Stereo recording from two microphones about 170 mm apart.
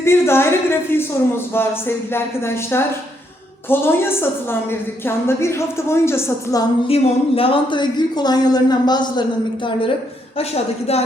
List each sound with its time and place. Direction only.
0.0 s speech: 15° left (ahead or behind)
2.7 s speech: 15° left (ahead or behind)
6.8 s speech: 35° left (ahead or behind)
10.3 s a woman's voice: 35° left (ahead or behind)